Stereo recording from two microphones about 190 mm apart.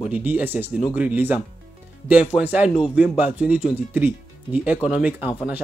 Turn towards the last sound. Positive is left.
turn(degrees=-5)  # may be behind; listen again after turning